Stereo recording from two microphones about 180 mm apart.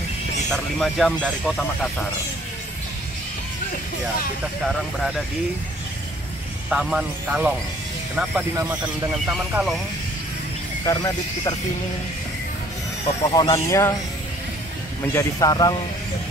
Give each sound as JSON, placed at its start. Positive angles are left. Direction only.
{"t": 0.5, "sound": "speech", "side_deg": 0}
{"t": 6.7, "sound": "speech", "side_deg": -5}
{"t": 10.9, "sound": "speech", "side_deg": 20}
{"t": 13.3, "sound": "speech", "side_deg": 20}
{"t": 15.1, "sound": "speech", "side_deg": 20}